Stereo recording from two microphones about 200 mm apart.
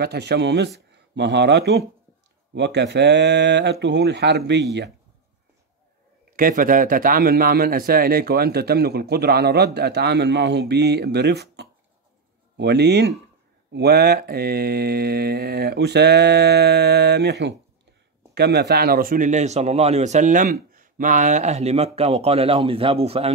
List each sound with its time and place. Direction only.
0.0 s mantra: 55° right (ahead or behind)
6.3 s a man's voice: 45° right (ahead or behind)
12.5 s mantra: 55° right (ahead or behind)
18.3 s speech: 55° right (ahead or behind); by 23.3 s 30° right (ahead or behind)